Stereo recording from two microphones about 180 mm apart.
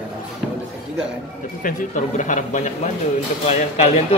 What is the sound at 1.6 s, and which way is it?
A man's voice, 45° left (ahead or behind).